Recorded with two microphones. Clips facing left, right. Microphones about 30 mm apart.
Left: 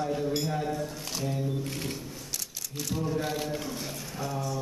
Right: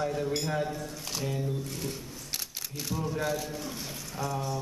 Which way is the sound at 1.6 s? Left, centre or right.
Left.